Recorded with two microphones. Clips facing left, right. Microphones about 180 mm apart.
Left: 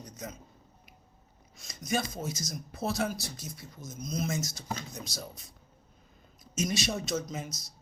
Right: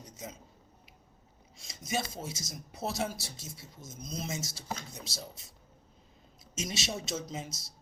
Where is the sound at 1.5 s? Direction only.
25° right (ahead or behind).